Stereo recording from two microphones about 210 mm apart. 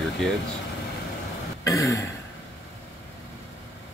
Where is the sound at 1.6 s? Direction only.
15° left (ahead or behind).